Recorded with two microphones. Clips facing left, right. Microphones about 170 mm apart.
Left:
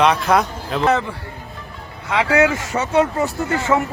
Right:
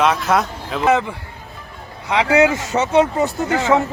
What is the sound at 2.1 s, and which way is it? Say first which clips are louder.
Speech: right 2 dB; 20° right (ahead or behind).